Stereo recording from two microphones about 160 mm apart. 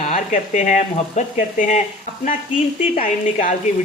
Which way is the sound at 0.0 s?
50° left (ahead or behind).